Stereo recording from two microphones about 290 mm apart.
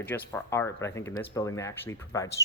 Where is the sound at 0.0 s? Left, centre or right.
Centre.